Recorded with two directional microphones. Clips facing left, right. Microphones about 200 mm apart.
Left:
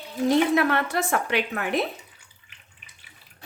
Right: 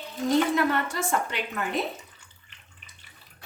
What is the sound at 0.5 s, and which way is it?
A woman's voice, 65° left (ahead or behind).